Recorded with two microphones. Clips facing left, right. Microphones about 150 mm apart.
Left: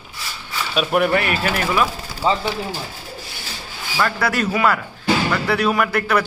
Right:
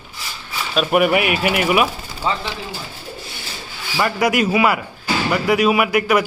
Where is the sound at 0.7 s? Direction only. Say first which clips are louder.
Right 2 dB; 10° right (ahead or behind).